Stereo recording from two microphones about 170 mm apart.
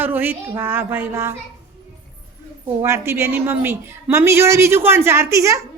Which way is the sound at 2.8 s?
15° right (ahead or behind).